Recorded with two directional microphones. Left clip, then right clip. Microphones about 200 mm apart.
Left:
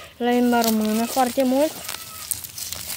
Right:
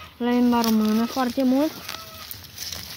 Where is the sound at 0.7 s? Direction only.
55° left (ahead or behind).